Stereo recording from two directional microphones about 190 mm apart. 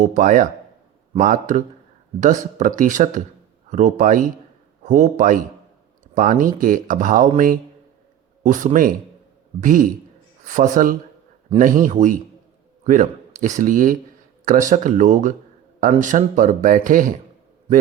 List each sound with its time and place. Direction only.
0.0 s a man's voice: 45° right (ahead or behind)